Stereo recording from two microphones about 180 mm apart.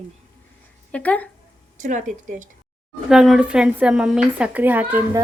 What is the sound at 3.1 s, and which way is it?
A woman's voice, 5° right (ahead or behind).